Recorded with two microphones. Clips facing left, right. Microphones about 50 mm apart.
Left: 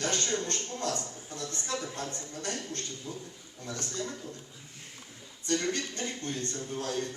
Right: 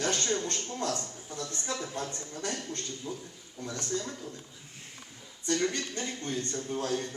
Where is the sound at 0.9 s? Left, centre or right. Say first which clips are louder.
Even; centre.